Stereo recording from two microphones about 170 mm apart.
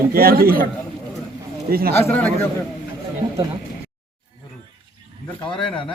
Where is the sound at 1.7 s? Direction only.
60° right (ahead or behind).